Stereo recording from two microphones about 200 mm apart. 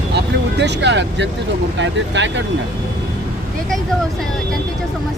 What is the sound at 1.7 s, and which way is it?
Speech, 65° right (ahead or behind).